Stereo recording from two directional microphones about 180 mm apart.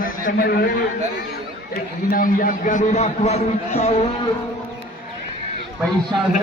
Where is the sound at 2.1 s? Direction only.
50° left (ahead or behind); by 4.0 s 35° left (ahead or behind).